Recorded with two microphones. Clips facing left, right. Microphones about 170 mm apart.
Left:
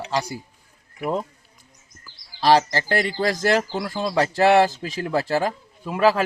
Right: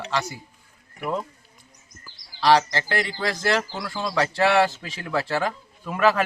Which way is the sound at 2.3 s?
40° left (ahead or behind).